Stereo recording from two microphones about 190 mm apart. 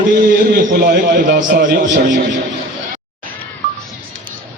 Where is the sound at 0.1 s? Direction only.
45° right (ahead or behind).